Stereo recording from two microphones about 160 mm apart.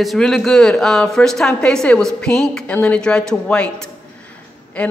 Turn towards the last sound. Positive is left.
turn(degrees=10)  # may be behind; listen again after turning